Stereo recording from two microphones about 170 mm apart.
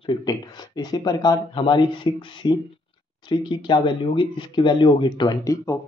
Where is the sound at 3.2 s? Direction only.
25° left (ahead or behind).